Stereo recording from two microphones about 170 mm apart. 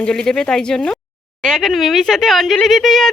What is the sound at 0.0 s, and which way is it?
Speech, 5° left (ahead or behind).